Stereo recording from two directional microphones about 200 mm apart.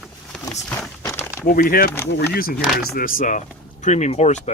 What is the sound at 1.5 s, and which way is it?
Speech, 45° left (ahead or behind).